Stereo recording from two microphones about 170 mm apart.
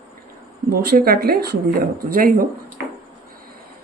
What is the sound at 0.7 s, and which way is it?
Speech, 65° right (ahead or behind).